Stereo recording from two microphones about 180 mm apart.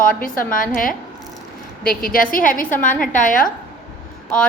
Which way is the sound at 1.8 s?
55° left (ahead or behind).